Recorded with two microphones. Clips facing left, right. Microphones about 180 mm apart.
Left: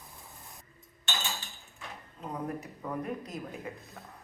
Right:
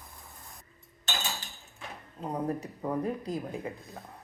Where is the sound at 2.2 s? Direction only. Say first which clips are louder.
Right 4 dB; 35° right (ahead or behind).